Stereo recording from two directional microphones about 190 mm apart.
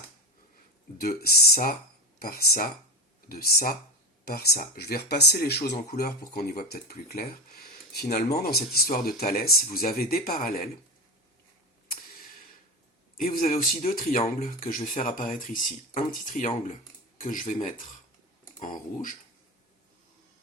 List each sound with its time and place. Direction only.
0.9 s speech: 55° left (ahead or behind)
13.1 s speech: 45° left (ahead or behind)